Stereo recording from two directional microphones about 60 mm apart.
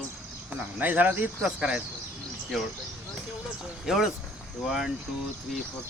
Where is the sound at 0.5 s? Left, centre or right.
Right.